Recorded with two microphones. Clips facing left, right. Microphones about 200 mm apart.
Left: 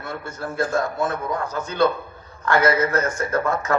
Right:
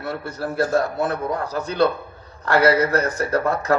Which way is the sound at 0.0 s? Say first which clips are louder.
Right 3 dB; 35° right (ahead or behind).